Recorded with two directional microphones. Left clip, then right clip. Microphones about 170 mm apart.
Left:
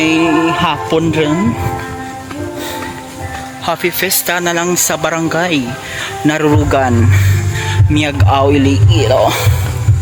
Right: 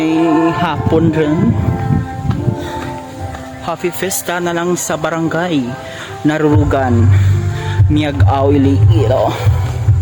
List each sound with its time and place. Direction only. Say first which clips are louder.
0.0 s music: left 1 dB; 10° right (ahead or behind)
4.0 s speech: left 3 dB; 15° right (ahead or behind)
7.9 s speech: left 2 dB; 10° right (ahead or behind)